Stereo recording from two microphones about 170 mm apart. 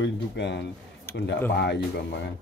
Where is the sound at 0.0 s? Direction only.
90° left.